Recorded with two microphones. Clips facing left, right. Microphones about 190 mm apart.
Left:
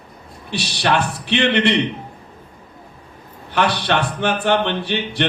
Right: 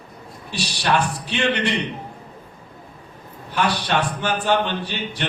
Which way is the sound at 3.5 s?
70° left (ahead or behind).